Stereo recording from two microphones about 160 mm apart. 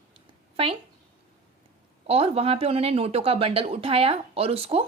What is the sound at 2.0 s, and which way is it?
Speech, 40° right (ahead or behind).